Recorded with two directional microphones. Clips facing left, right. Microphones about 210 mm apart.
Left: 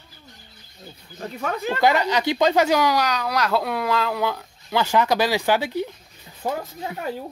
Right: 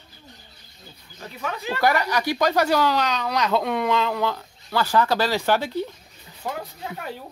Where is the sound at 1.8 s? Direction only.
20° left (ahead or behind).